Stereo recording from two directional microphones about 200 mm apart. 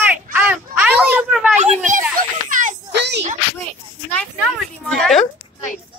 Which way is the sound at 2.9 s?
60° right (ahead or behind).